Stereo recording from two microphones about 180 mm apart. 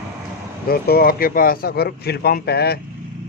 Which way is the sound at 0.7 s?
55° left (ahead or behind).